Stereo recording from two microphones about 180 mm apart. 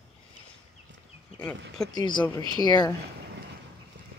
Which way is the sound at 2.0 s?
25° left (ahead or behind).